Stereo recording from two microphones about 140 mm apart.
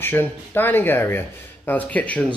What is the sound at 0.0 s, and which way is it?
Speech, 15° left (ahead or behind).